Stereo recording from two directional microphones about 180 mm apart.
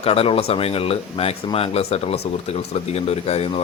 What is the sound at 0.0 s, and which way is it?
Speech, 30° left (ahead or behind).